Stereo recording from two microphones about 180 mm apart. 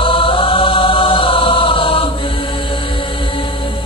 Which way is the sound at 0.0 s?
30° left (ahead or behind).